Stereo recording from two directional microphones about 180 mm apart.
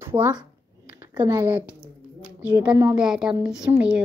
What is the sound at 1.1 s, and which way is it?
Speech, 25° right (ahead or behind).